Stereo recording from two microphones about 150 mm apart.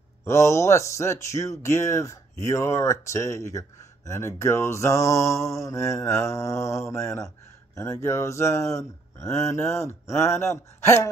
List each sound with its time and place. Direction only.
0.2 s speech: 20° left (ahead or behind)